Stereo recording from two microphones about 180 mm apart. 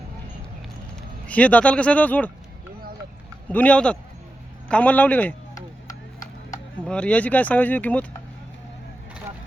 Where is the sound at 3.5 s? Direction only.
10° left (ahead or behind).